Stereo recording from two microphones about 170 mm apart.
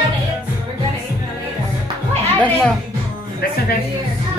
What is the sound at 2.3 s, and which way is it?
Speech, 5° left (ahead or behind).